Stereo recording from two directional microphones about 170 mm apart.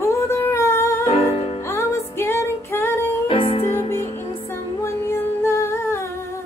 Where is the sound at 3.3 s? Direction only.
35° left (ahead or behind).